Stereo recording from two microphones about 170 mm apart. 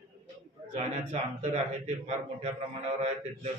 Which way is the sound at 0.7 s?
40° right (ahead or behind).